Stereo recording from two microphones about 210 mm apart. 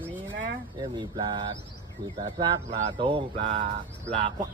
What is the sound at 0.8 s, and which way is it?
Speech, 20° right (ahead or behind).